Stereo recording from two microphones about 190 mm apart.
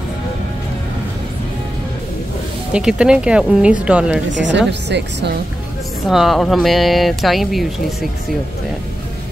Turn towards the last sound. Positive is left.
turn(degrees=0)  # may be behind; listen again after turning